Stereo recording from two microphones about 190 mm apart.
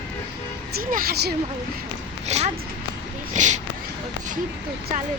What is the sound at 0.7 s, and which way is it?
Speech, 50° right (ahead or behind).